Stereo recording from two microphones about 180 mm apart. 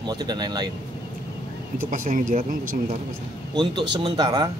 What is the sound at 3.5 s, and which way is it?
Speech, 25° right (ahead or behind).